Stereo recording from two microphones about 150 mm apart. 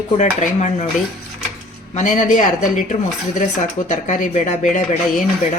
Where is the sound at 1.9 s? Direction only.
55° left (ahead or behind).